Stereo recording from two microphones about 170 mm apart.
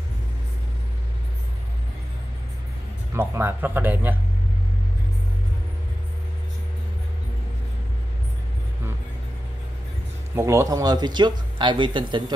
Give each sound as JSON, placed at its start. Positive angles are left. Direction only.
{"t": 3.2, "sound": "speech", "side_deg": -15}
{"t": 10.3, "sound": "speech", "side_deg": -20}